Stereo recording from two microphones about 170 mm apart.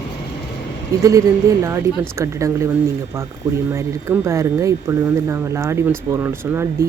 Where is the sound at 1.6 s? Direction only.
15° right (ahead or behind).